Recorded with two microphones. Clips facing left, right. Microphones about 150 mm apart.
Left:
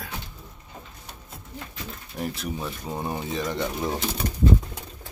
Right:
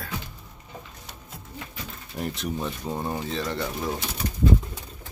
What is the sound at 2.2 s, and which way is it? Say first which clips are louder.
Speech: right 1 dB; centre (ahead or behind).